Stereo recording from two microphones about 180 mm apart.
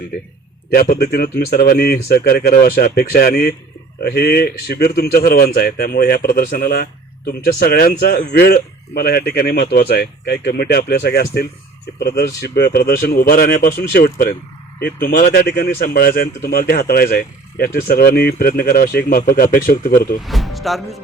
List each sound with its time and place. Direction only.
0.7 s speech: 60° left (ahead or behind)
20.2 s speech: centre (ahead or behind)